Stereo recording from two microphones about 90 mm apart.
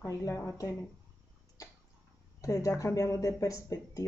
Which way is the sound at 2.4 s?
40° left (ahead or behind).